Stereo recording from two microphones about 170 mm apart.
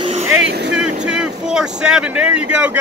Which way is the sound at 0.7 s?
5° right (ahead or behind).